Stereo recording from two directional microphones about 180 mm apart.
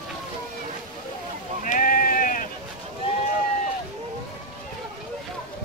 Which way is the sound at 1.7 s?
50° left (ahead or behind).